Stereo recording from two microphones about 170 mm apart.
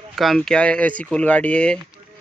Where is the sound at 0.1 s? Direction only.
Centre (ahead or behind).